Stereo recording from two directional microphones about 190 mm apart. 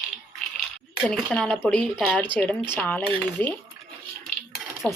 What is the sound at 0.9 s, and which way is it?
Speech, centre (ahead or behind).